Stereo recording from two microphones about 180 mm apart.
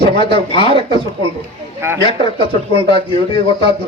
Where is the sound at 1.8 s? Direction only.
15° right (ahead or behind).